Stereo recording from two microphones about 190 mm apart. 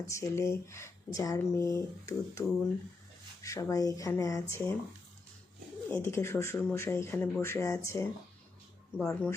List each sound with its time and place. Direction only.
0.1 s speech: 15° left (ahead or behind)
5.9 s speech: 15° left (ahead or behind)